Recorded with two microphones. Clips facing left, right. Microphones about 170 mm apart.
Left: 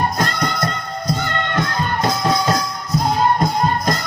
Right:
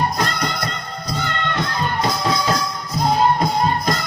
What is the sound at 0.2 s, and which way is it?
Music, 50° left (ahead or behind).